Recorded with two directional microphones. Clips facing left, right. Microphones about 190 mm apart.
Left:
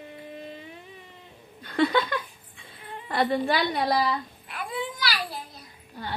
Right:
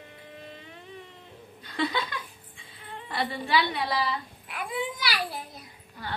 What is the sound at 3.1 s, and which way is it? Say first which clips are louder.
Speech: left 4 dB; 50° left (ahead or behind).